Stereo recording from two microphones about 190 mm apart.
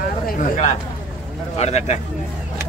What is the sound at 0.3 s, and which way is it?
Speech, 40° left (ahead or behind).